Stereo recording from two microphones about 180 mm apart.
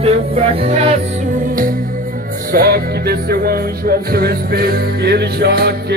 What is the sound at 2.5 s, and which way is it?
Music, 60° right (ahead or behind).